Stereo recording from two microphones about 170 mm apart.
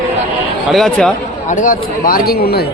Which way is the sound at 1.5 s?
50° left (ahead or behind).